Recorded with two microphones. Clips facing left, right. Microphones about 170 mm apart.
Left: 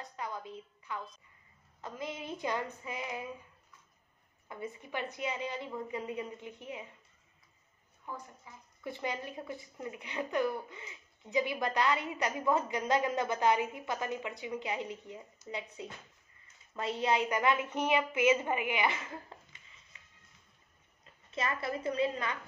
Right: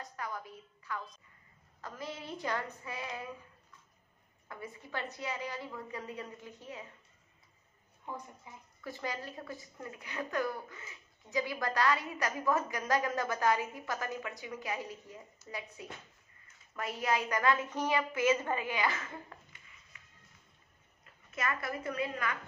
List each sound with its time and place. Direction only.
0.1 s a woman's voice: 20° left (ahead or behind)
4.5 s a woman's voice: 20° left (ahead or behind)
8.0 s a woman's voice: 20° right (ahead or behind)
8.8 s a woman's voice: 20° left (ahead or behind)
19.9 s music: 25° left (ahead or behind)
21.0 s a woman's voice: 25° left (ahead or behind)